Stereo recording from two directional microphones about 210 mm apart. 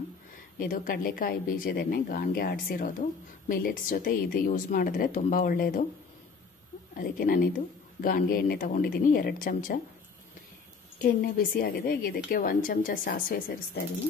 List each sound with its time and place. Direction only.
0.6 s a woman's voice: 40° left (ahead or behind)
7.0 s a woman's voice: 40° left (ahead or behind)
11.0 s a woman's voice: 45° left (ahead or behind)